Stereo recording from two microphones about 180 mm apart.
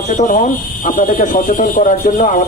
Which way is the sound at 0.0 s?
45° left (ahead or behind).